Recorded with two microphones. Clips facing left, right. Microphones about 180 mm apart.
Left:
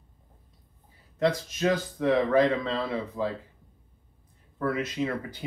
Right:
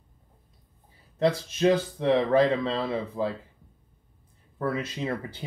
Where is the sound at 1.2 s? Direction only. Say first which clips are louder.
Right 3 dB; 30° right (ahead or behind).